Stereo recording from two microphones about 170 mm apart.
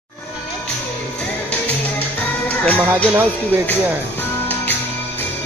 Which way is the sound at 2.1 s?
10° left (ahead or behind).